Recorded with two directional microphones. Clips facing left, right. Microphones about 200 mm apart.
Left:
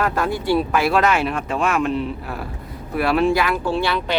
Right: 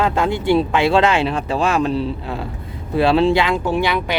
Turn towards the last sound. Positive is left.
turn(degrees=-15)  # may be behind; listen again after turning